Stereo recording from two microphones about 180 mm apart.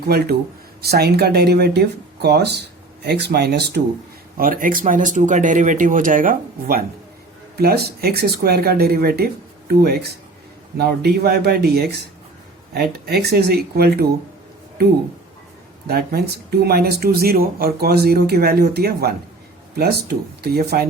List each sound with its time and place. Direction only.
0.1 s speech: 60° right (ahead or behind)
4.4 s speech: 50° right (ahead or behind)
15.9 s speech: 60° right (ahead or behind)